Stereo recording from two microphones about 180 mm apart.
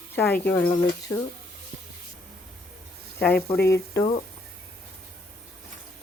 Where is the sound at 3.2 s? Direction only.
10° left (ahead or behind).